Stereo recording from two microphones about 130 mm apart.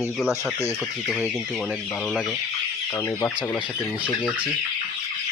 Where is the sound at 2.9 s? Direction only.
20° left (ahead or behind).